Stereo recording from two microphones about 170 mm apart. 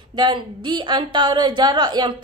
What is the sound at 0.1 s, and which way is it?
A woman's voice, 30° right (ahead or behind).